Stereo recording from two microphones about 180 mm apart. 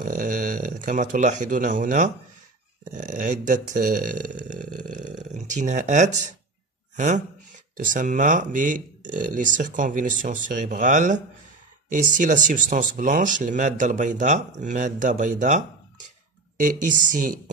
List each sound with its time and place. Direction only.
0.0 s speech: 50° right (ahead or behind)
16.8 s speech: 45° right (ahead or behind)